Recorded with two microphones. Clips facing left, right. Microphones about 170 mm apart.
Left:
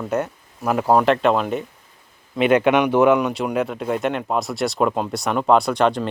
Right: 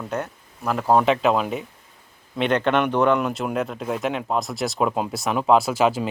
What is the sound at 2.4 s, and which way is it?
Speech, 10° left (ahead or behind).